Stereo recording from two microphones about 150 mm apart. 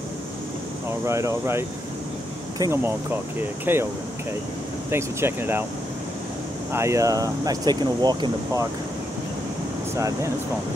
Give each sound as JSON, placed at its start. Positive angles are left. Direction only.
{"t": 1.0, "sound": "speech", "side_deg": -20}
{"t": 4.9, "sound": "speech", "side_deg": -15}
{"t": 6.7, "sound": "speech", "side_deg": -20}
{"t": 9.9, "sound": "speech", "side_deg": -20}